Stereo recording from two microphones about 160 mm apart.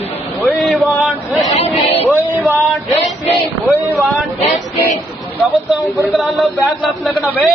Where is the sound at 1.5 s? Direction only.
30° left (ahead or behind).